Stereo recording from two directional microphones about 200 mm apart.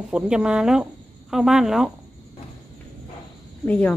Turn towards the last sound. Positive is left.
turn(degrees=5)  # may be behind; listen again after turning